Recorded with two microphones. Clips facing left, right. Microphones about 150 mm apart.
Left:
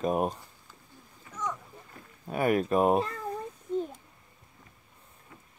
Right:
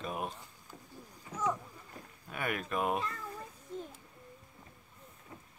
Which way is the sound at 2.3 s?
35° left (ahead or behind).